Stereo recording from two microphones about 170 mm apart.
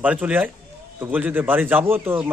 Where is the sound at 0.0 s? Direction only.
10° right (ahead or behind).